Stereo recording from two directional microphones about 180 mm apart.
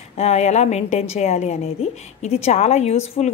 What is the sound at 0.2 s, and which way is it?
A woman's voice, 40° left (ahead or behind).